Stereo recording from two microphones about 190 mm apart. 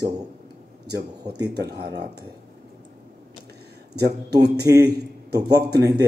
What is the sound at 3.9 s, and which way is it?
Speech, 60° right (ahead or behind).